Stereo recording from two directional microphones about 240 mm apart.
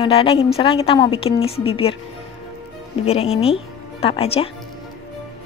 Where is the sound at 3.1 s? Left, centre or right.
Left.